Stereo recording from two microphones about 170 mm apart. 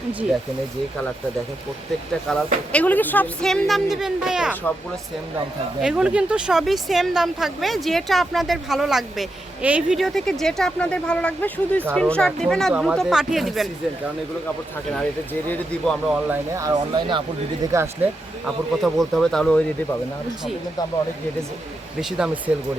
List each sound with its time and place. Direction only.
2.3 s speech: 10° left (ahead or behind)
5.8 s speech: 5° right (ahead or behind)
14.9 s speech: 10° left (ahead or behind)
16.0 s speech: 5° right (ahead or behind)
16.6 s speech: 20° right (ahead or behind)
18.4 s speech: centre (ahead or behind)